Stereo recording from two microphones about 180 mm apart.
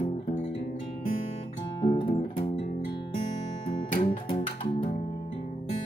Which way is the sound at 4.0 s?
30° left (ahead or behind).